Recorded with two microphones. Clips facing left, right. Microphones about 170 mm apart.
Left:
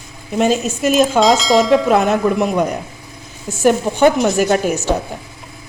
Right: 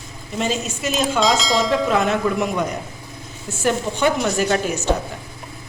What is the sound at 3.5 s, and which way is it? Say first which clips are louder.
Speech: left 7 dB; 40° left (ahead or behind).